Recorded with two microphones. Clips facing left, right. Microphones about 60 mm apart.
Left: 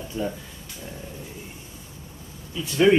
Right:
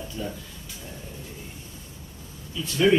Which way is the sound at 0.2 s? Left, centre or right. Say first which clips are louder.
Left 6 dB; left.